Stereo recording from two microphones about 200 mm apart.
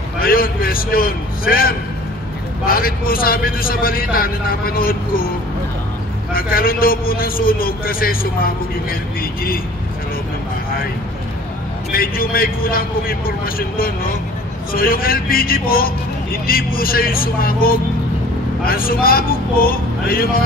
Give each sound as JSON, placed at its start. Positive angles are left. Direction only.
{"t": 0.2, "sound": "a man's voice", "side_deg": 45}
{"t": 6.3, "sound": "a man's voice", "side_deg": 45}
{"t": 11.9, "sound": "a man's voice", "side_deg": 45}